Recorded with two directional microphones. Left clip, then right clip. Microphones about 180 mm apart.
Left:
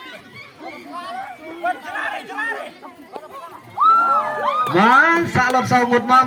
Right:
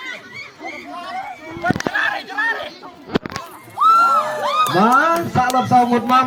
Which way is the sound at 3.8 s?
65° right (ahead or behind).